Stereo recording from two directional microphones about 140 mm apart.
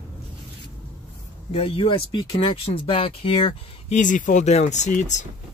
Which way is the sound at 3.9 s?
65° left (ahead or behind).